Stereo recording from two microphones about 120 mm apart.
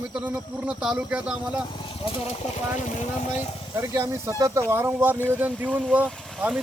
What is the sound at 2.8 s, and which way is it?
Speech, 90° left.